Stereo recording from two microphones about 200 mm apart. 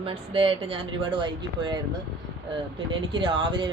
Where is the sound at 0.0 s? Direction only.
25° right (ahead or behind).